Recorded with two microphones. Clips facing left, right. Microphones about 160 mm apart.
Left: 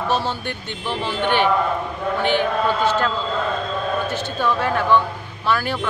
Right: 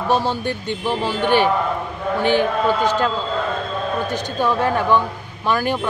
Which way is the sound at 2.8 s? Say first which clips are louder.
Right 1 dB; 15° right (ahead or behind).